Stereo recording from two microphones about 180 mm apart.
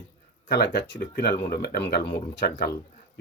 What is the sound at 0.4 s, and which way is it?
Speech, 70° left (ahead or behind).